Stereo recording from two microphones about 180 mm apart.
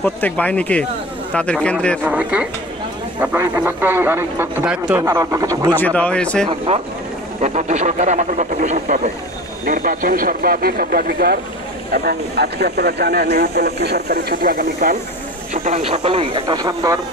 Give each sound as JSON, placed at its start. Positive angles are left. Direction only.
{"t": 0.0, "sound": "a man's voice", "side_deg": 10}
{"t": 2.0, "sound": "a man's voice", "side_deg": -10}
{"t": 5.8, "sound": "speech", "side_deg": 10}
{"t": 6.7, "sound": "speech", "side_deg": -35}
{"t": 14.3, "sound": "speech", "side_deg": -55}
{"t": 15.5, "sound": "speech", "side_deg": -35}